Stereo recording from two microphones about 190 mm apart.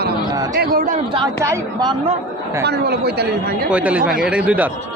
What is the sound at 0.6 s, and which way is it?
Speech, 50° right (ahead or behind).